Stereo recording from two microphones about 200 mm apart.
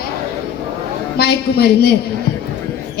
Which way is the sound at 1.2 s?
50° left (ahead or behind).